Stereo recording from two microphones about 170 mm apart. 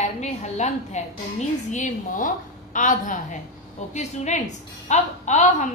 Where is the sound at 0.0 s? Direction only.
40° left (ahead or behind).